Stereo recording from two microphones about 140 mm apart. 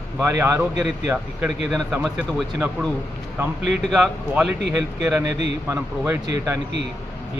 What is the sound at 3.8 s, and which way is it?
A man's voice, 5° right (ahead or behind).